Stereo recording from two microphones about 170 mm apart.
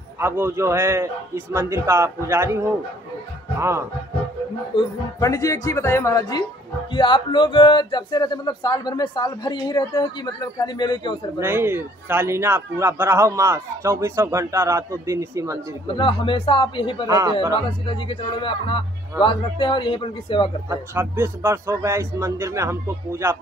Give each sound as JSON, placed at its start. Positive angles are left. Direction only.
{"t": 0.2, "sound": "a man's voice", "side_deg": -15}
{"t": 5.2, "sound": "speech", "side_deg": 20}
{"t": 11.3, "sound": "a man's voice", "side_deg": -15}
{"t": 16.0, "sound": "speech", "side_deg": 30}
{"t": 17.1, "sound": "speech", "side_deg": -25}
{"t": 17.8, "sound": "speech", "side_deg": 30}
{"t": 20.6, "sound": "a man's voice", "side_deg": -15}